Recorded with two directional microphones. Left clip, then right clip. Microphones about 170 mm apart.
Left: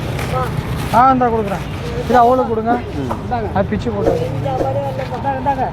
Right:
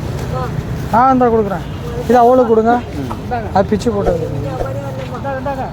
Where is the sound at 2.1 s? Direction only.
75° right (ahead or behind).